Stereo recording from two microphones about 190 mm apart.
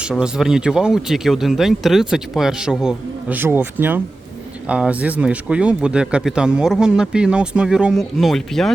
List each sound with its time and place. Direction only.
0.1 s speech: 5° right (ahead or behind)